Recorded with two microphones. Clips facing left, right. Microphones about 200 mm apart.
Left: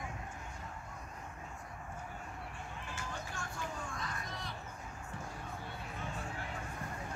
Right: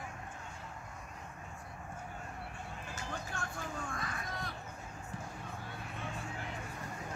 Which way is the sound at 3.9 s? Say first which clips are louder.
Right 2 dB; 55° right (ahead or behind).